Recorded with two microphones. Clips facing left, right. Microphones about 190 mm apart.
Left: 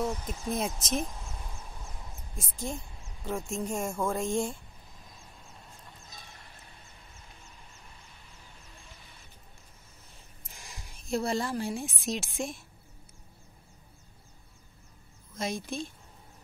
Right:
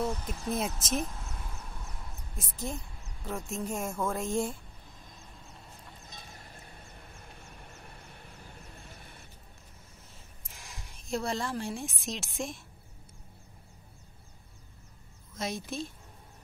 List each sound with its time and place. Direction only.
0.3 s speech: centre (ahead or behind)
2.3 s speech: 5° right (ahead or behind)
7.0 s a sound: 55° right (ahead or behind)
10.5 s a woman's voice: centre (ahead or behind)
15.3 s speech: centre (ahead or behind)